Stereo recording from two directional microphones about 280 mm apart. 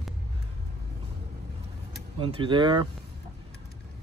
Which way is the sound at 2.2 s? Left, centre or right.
Centre.